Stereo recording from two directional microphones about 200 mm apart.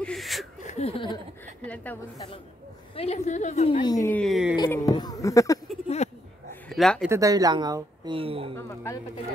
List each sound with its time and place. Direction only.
0.0 s laughter: centre (ahead or behind)
0.6 s laughter: 35° left (ahead or behind)
1.6 s speech: 5° left (ahead or behind)
2.1 s a man's voice: 25° left (ahead or behind)
3.8 s speech: 15° left (ahead or behind); by 4.6 s centre (ahead or behind)
4.6 s speech: 15° left (ahead or behind)
6.0 s a sound: 35° left (ahead or behind)
6.7 s speech: centre (ahead or behind)
7.1 s a woman's voice: 15° right (ahead or behind)
8.5 s speech: 15° left (ahead or behind)